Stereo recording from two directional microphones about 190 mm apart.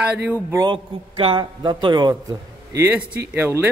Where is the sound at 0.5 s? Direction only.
25° right (ahead or behind).